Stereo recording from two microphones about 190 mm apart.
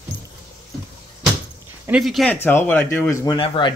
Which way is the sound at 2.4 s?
10° left (ahead or behind).